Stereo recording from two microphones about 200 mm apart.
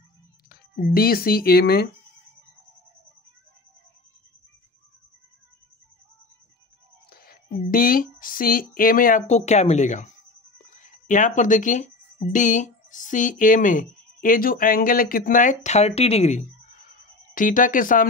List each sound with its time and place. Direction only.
0.5 s speech: 45° left (ahead or behind)
7.1 s speech: 50° left (ahead or behind)